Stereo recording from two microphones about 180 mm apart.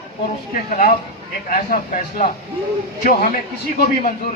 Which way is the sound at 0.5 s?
50° left (ahead or behind).